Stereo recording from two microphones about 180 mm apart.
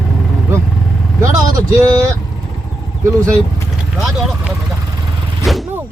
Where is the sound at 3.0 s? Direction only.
15° right (ahead or behind).